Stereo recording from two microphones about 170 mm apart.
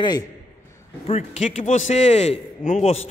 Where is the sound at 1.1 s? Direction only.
40° left (ahead or behind).